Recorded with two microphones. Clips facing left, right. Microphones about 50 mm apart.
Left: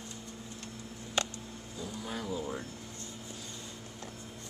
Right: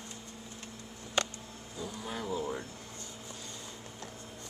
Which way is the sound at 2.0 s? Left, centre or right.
Centre.